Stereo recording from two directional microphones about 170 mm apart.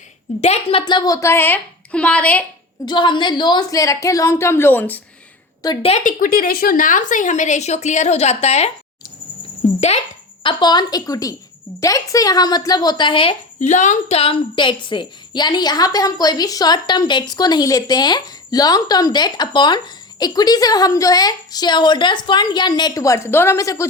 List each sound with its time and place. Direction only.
0.4 s a woman's voice: 35° left (ahead or behind); by 2.4 s 10° left (ahead or behind)
2.8 s a woman's voice: 25° left (ahead or behind); by 4.9 s 10° left (ahead or behind)
5.6 s a woman's voice: 20° left (ahead or behind)
6.0 s a woman's voice: 50° left (ahead or behind)
9.6 s a sound: 40° left (ahead or behind)
10.4 s a woman's voice: 25° left (ahead or behind)
13.6 s a woman's voice: 45° left (ahead or behind); by 23.8 s 20° left (ahead or behind)